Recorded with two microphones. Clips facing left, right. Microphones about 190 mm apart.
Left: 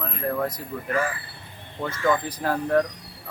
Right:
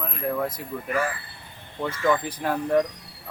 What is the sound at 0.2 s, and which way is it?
Speech, 5° right (ahead or behind).